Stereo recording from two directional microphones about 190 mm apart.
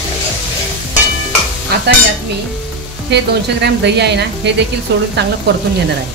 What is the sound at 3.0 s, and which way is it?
Speech, 60° right (ahead or behind).